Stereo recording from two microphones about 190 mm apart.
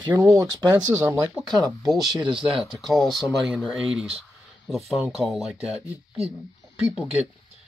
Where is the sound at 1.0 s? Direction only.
5° right (ahead or behind).